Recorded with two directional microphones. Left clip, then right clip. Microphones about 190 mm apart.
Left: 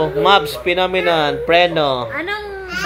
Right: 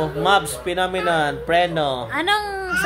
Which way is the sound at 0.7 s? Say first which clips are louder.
Left 4 dB; 20° left (ahead or behind).